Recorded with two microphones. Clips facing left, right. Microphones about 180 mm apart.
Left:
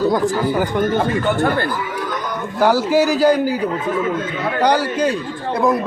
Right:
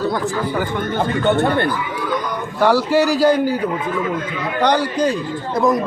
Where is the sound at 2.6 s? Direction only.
5° left (ahead or behind).